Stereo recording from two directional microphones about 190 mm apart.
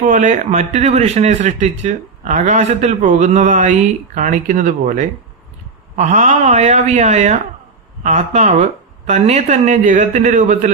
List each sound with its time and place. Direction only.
0.0 s a man's voice: 40° right (ahead or behind)